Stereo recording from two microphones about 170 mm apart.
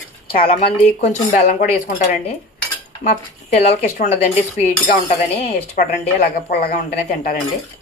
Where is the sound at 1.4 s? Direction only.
45° left (ahead or behind).